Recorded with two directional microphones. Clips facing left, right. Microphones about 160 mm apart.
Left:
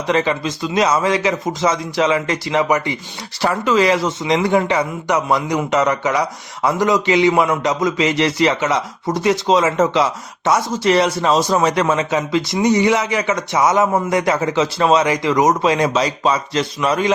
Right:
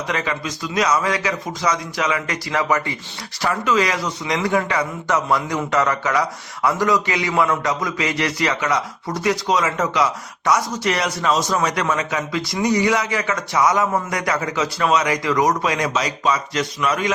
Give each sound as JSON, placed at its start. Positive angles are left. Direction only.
{"t": 0.1, "sound": "speech", "side_deg": 30}
{"t": 3.4, "sound": "speech", "side_deg": 30}